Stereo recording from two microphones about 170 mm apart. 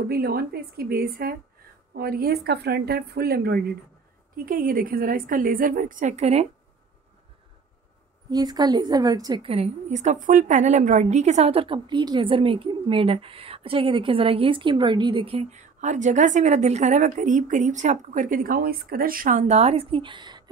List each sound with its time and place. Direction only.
0.1 s a woman's voice: 65° right (ahead or behind); by 6.4 s 40° right (ahead or behind)
8.3 s a woman's voice: 25° right (ahead or behind)
9.4 s a woman's voice: 35° right (ahead or behind)